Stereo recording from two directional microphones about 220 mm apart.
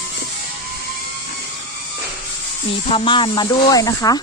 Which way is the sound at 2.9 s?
25° left (ahead or behind).